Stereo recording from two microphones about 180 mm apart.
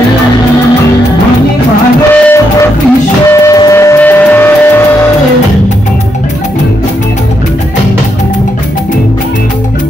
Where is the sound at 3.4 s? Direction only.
20° left (ahead or behind).